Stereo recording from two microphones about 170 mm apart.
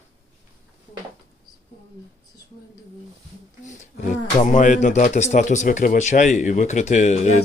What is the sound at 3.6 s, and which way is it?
Speech, 45° left (ahead or behind).